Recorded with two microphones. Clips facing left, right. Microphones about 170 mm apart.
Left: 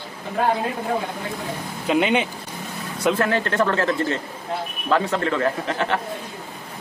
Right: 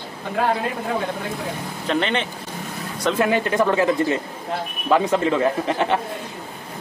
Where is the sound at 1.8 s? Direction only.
10° left (ahead or behind).